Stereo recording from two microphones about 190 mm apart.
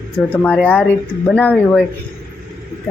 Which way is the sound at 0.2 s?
Centre (ahead or behind).